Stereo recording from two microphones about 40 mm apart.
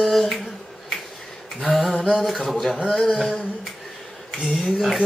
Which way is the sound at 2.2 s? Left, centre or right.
Centre.